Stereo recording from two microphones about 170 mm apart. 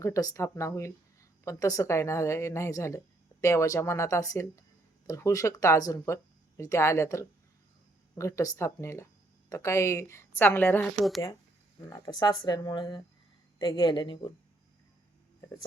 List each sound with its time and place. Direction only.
0.0 s a woman's voice: 20° left (ahead or behind); by 11.2 s centre (ahead or behind)
11.9 s speech: 25° left (ahead or behind)